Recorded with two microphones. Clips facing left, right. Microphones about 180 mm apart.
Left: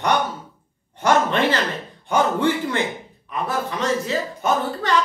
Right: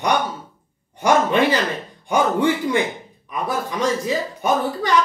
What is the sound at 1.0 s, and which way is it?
Speech, 10° right (ahead or behind).